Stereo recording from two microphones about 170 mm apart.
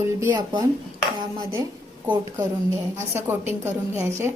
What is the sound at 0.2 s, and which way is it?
Speech, 20° right (ahead or behind).